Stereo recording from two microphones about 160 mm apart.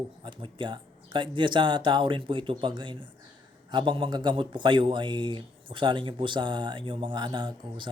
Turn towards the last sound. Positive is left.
turn(degrees=-30)  # may be behind; listen again after turning